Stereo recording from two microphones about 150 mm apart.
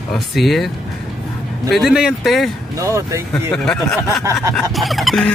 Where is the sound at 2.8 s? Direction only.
20° right (ahead or behind).